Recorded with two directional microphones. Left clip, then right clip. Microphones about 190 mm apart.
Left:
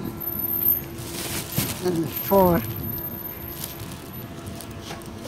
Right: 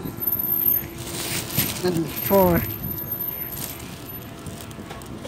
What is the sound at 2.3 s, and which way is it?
Speech, 5° left (ahead or behind).